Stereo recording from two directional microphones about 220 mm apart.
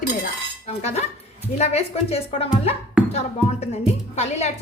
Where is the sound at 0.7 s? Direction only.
30° left (ahead or behind).